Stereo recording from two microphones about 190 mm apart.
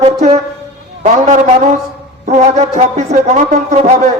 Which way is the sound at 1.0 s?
35° right (ahead or behind).